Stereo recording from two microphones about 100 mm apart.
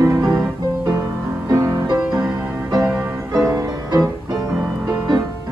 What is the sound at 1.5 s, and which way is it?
Music, 35° right (ahead or behind).